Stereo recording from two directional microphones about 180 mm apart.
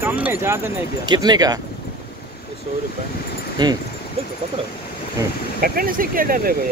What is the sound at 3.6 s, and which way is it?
Speech, 25° right (ahead or behind).